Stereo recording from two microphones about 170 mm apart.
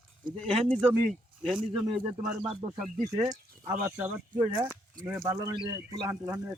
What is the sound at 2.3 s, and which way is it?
Speech, 45° right (ahead or behind).